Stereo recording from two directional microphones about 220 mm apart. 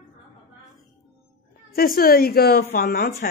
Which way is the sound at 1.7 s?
40° left (ahead or behind).